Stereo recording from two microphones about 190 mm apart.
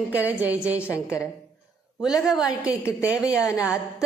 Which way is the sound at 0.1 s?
10° right (ahead or behind).